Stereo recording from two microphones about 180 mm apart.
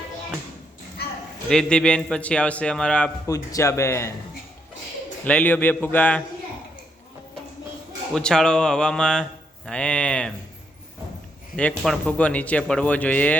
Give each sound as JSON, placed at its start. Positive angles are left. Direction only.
{"t": 1.5, "sound": "a man's voice", "side_deg": 5}
{"t": 3.2, "sound": "speech", "side_deg": 20}
{"t": 5.2, "sound": "speech", "side_deg": 10}
{"t": 8.1, "sound": "a man's voice", "side_deg": 5}
{"t": 11.5, "sound": "speech", "side_deg": 5}